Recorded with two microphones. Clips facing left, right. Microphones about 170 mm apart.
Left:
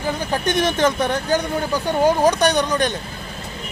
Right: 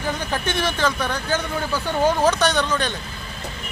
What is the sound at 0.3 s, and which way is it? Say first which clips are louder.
Speech: left 7 dB; 15° left (ahead or behind).